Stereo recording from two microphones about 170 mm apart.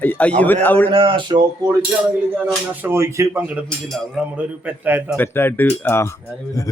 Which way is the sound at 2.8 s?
15° right (ahead or behind).